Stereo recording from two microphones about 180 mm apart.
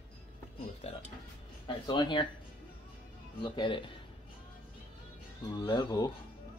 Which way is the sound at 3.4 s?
25° left (ahead or behind).